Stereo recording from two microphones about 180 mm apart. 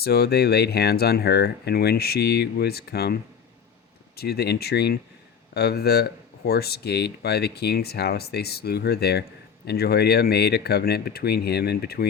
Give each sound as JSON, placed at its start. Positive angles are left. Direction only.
{"t": 0.0, "sound": "speech", "side_deg": 60}